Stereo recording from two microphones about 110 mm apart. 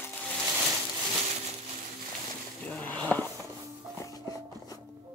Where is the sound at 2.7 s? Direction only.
15° left (ahead or behind).